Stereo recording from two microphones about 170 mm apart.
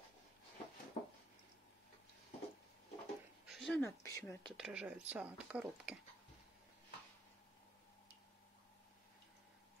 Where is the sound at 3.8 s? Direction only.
15° left (ahead or behind).